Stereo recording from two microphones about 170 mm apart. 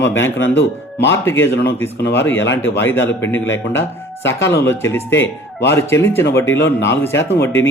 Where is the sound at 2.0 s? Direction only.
90° left.